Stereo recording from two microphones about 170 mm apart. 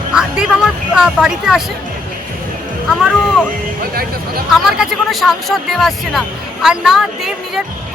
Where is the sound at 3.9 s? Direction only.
60° right (ahead or behind).